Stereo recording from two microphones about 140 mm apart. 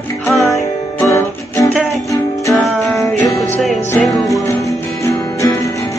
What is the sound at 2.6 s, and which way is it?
Music, centre (ahead or behind).